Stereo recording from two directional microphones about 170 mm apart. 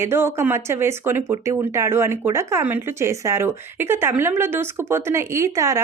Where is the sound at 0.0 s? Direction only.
15° right (ahead or behind).